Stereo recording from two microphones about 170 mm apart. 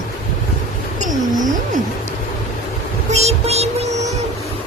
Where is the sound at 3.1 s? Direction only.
40° right (ahead or behind).